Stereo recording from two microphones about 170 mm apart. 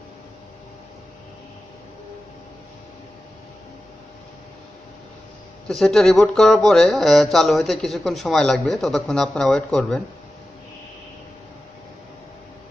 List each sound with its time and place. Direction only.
5.7 s speech: 5° left (ahead or behind)